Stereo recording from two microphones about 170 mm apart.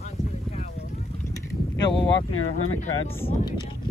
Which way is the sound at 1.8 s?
25° left (ahead or behind).